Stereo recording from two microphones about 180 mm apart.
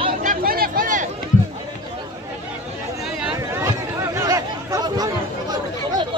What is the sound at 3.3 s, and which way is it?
Chatter, 15° right (ahead or behind).